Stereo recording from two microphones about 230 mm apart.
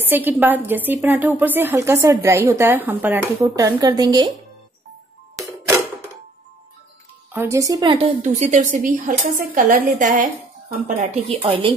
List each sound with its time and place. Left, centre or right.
0.0 s a woman's voice: centre
5.3 s clock: centre
7.3 s a woman's voice: centre
8.2 s a woman's voice: right
11.2 s a woman's voice: right